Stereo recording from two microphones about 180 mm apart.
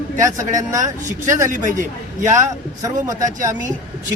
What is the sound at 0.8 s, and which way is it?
A man's voice, 45° right (ahead or behind).